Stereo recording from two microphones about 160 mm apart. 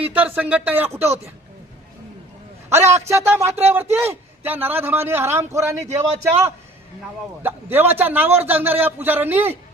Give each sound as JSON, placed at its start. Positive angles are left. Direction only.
{"t": 0.0, "sound": "a man's voice", "side_deg": -10}
{"t": 2.6, "sound": "a man's voice", "side_deg": -15}
{"t": 3.5, "sound": "a man's voice", "side_deg": -40}
{"t": 3.9, "sound": "a man's voice", "side_deg": -15}
{"t": 7.4, "sound": "a man's voice", "side_deg": -15}